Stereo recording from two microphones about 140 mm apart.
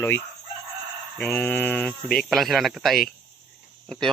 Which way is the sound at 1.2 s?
10° left (ahead or behind).